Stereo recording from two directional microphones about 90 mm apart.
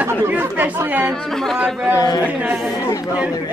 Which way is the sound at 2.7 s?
40° left (ahead or behind).